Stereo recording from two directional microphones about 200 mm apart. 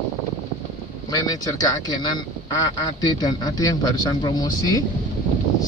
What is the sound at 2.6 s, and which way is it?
A man's voice, 20° left (ahead or behind).